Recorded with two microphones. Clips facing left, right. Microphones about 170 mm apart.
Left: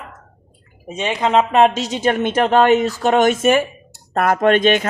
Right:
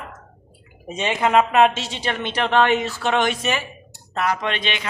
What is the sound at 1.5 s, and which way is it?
A woman's voice, 35° left (ahead or behind).